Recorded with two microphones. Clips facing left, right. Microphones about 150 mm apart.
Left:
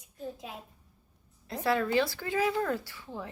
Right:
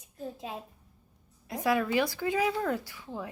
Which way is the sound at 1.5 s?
10° right (ahead or behind).